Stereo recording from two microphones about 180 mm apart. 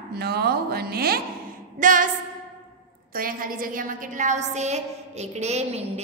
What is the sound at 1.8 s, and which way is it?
Speech, 45° right (ahead or behind).